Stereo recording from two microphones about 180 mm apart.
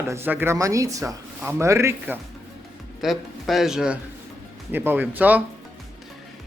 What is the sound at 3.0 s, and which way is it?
A man's voice, centre (ahead or behind).